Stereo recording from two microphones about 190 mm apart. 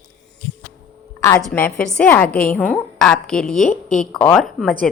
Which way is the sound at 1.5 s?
5° left (ahead or behind).